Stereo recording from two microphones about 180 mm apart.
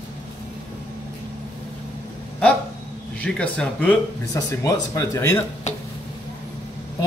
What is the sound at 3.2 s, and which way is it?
Speech, 5° left (ahead or behind).